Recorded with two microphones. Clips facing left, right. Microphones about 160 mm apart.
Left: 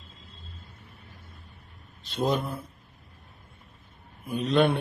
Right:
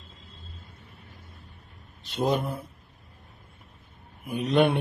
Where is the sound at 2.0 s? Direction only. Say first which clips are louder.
Right 1 dB; 15° right (ahead or behind).